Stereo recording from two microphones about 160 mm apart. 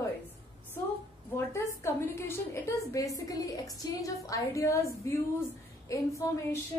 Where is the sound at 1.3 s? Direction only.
15° left (ahead or behind).